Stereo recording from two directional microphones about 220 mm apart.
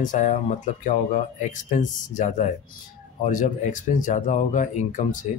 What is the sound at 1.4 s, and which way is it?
A man's voice, 35° left (ahead or behind).